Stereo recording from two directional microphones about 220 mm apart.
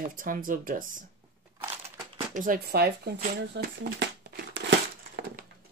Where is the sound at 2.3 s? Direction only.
40° right (ahead or behind).